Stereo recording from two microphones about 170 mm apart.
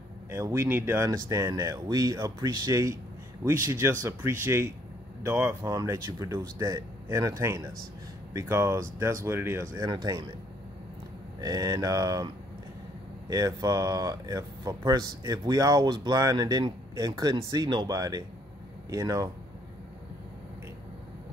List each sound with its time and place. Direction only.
0.3 s speech: 15° right (ahead or behind)
11.4 s speech: 20° right (ahead or behind)
13.3 s speech: 20° right (ahead or behind)